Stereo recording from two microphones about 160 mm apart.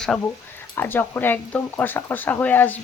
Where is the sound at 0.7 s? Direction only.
15° left (ahead or behind).